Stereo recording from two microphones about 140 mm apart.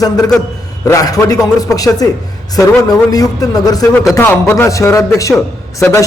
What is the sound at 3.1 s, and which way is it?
A man's voice, 25° left (ahead or behind).